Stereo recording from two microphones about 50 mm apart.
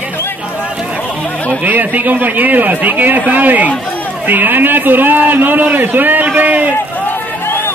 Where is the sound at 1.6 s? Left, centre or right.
Right.